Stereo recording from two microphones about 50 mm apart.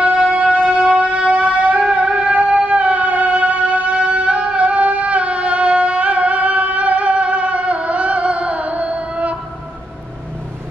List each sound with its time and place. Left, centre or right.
0.3 s music: right